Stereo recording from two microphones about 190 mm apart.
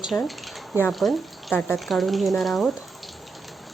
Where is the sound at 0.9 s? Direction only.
Centre (ahead or behind).